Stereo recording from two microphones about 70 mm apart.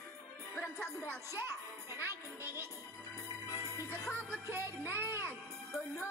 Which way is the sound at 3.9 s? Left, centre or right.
Right.